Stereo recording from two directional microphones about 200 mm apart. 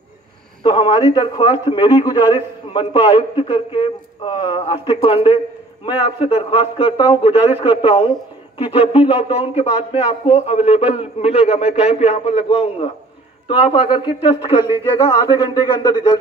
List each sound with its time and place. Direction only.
0.7 s a man's voice: 25° left (ahead or behind)